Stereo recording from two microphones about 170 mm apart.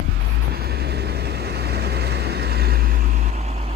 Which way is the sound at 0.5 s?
70° right (ahead or behind).